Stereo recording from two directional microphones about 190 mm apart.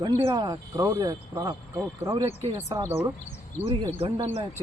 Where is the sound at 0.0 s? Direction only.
25° right (ahead or behind).